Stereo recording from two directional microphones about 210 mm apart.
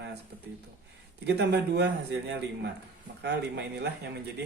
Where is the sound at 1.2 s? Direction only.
55° right (ahead or behind).